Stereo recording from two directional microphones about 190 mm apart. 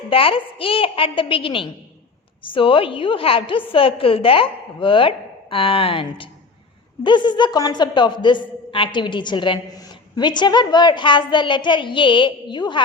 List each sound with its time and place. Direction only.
0.1 s a woman's voice: 30° left (ahead or behind)